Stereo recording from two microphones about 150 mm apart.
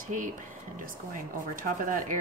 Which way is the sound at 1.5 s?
65° right (ahead or behind).